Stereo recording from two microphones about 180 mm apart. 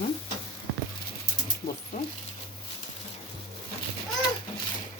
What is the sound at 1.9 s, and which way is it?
Speech, 45° left (ahead or behind).